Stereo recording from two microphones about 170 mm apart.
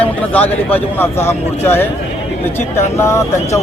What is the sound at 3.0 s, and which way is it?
Speech, 15° left (ahead or behind).